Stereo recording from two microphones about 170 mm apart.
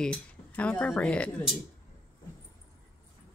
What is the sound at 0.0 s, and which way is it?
Speech, 5° left (ahead or behind).